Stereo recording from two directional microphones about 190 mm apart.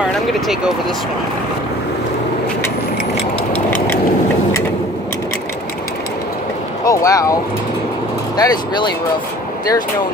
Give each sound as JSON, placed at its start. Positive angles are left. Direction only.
{"t": 3.5, "sound": "a sound", "side_deg": 10}
{"t": 6.8, "sound": "speech", "side_deg": 20}
{"t": 8.4, "sound": "speech", "side_deg": 20}